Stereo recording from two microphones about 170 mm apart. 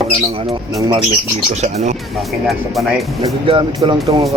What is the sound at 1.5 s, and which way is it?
Speech, 40° right (ahead or behind).